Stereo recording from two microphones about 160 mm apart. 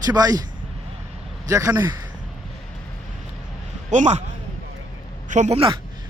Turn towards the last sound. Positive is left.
turn(degrees=-50)  # may be behind; listen again after turning